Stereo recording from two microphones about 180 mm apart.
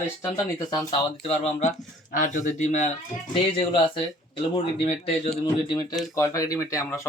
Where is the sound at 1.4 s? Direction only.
35° left (ahead or behind).